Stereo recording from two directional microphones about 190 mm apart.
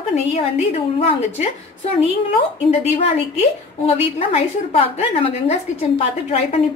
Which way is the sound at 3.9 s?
30° left (ahead or behind).